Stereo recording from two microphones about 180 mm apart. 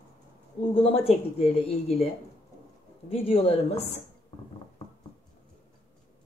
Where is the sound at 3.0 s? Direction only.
30° left (ahead or behind).